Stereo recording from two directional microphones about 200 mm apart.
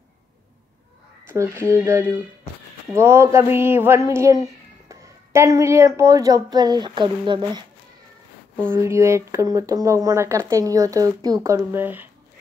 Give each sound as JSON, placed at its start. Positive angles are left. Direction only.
{"t": 1.3, "sound": "speech", "side_deg": -15}
{"t": 8.6, "sound": "speech", "side_deg": -10}